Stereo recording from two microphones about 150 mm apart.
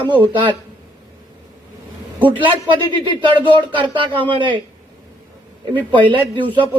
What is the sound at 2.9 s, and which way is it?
Speech, 35° right (ahead or behind).